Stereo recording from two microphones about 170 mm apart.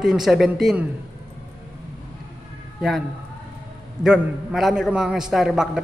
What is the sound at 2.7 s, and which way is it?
Speech, centre (ahead or behind).